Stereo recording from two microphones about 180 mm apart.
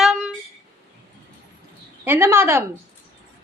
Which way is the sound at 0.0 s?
Centre (ahead or behind).